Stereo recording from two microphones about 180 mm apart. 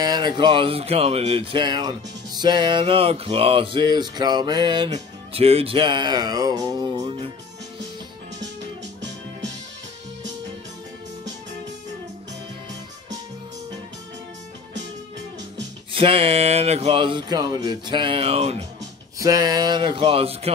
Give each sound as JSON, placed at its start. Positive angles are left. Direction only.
{"t": 0.0, "sound": "speech", "side_deg": -20}
{"t": 4.9, "sound": "music", "side_deg": -35}
{"t": 15.9, "sound": "speech", "side_deg": -30}
{"t": 19.1, "sound": "speech", "side_deg": -20}